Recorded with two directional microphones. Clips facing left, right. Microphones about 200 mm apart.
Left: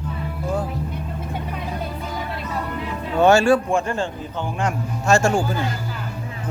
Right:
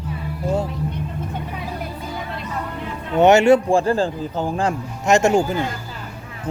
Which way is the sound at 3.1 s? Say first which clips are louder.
Right 3 dB; 20° right (ahead or behind).